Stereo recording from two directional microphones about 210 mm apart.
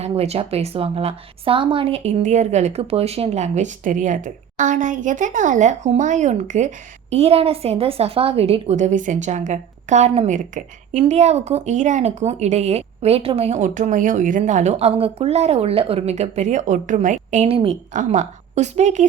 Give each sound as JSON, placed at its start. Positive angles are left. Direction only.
{"t": 0.0, "sound": "a woman's voice", "side_deg": -30}